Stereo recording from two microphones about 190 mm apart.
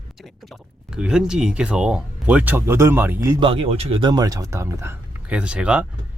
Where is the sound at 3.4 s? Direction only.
30° right (ahead or behind).